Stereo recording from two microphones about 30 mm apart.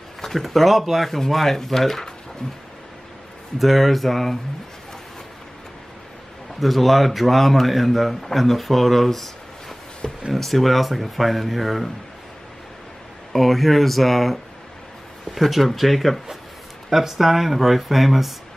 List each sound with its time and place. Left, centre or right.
0.2 s a man's voice: centre
3.5 s a man's voice: centre
6.6 s a man's voice: centre
13.3 s a man's voice: centre
15.4 s a man's voice: centre
16.9 s speech: centre